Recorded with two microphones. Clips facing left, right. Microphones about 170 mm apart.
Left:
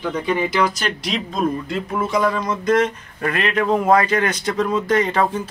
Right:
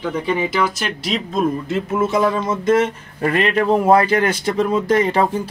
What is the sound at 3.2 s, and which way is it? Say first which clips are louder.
Speech: right 3 dB; 30° right (ahead or behind).